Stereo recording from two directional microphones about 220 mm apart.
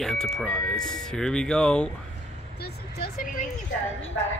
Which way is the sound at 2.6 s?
45° left (ahead or behind).